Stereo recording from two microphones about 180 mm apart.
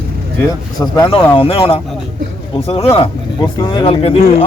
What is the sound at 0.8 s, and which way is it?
Speech, 15° left (ahead or behind).